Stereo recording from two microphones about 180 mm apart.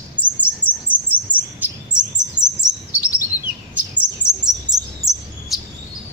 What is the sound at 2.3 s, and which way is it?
Chirp, 20° right (ahead or behind).